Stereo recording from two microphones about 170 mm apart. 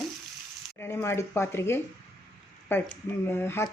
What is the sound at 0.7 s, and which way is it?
Speech, 15° left (ahead or behind).